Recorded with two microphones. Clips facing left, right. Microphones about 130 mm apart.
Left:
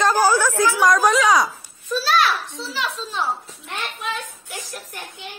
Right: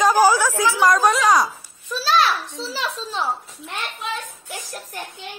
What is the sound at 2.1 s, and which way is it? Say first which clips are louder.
Speech: right 2 dB; 30° right (ahead or behind).